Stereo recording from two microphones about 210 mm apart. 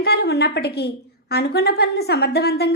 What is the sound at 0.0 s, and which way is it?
A woman's voice, 50° left (ahead or behind).